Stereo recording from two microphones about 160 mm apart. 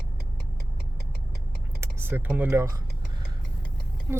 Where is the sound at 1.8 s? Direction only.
15° right (ahead or behind).